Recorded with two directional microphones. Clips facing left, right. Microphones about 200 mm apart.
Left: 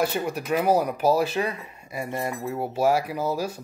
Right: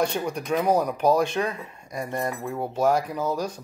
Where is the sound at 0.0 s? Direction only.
5° left (ahead or behind).